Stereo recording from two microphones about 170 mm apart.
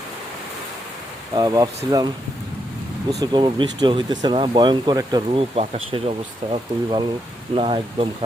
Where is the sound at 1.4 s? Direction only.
20° right (ahead or behind).